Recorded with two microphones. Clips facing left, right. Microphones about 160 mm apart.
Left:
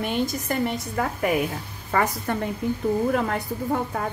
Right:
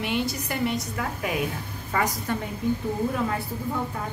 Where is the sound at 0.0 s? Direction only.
50° left (ahead or behind).